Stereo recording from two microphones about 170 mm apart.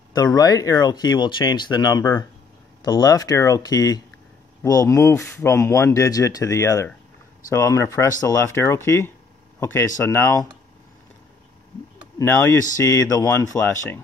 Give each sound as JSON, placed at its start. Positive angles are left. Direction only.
{"t": 0.1, "sound": "speech", "side_deg": 20}
{"t": 12.2, "sound": "speech", "side_deg": 15}